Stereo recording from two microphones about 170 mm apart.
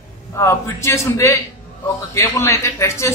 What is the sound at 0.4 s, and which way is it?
A woman's voice, 15° left (ahead or behind).